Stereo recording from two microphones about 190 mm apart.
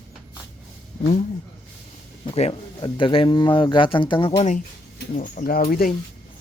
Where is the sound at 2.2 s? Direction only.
30° left (ahead or behind); by 6.0 s 50° left (ahead or behind).